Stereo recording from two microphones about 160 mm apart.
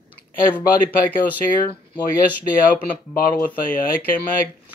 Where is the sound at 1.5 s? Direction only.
60° left (ahead or behind).